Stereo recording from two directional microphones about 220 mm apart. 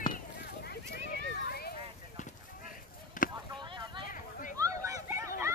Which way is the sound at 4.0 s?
40° left (ahead or behind).